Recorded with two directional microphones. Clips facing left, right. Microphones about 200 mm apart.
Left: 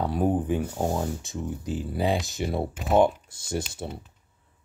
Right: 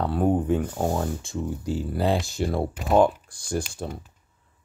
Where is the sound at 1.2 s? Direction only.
20° left (ahead or behind).